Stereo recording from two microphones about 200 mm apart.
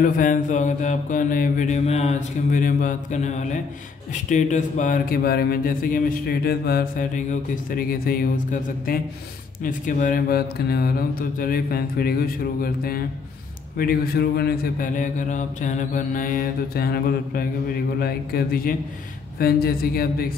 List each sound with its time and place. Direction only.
0.0 s mantra: 40° left (ahead or behind)